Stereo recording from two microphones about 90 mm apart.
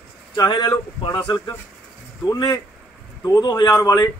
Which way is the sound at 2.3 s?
35° left (ahead or behind).